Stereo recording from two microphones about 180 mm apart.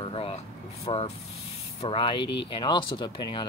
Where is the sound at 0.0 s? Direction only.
30° left (ahead or behind).